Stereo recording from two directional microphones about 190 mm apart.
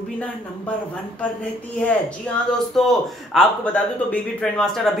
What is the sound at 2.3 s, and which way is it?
A woman's voice, 5° left (ahead or behind).